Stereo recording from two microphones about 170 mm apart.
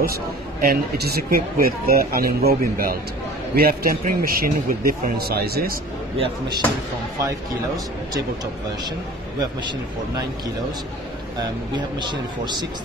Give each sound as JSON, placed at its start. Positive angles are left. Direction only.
{"t": 0.0, "sound": "speech", "side_deg": -60}
{"t": 6.1, "sound": "speech", "side_deg": -30}
{"t": 9.4, "sound": "speech", "side_deg": -25}
{"t": 11.3, "sound": "speech", "side_deg": -25}